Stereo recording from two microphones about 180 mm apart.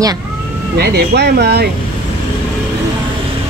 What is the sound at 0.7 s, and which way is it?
Speech, 60° right (ahead or behind).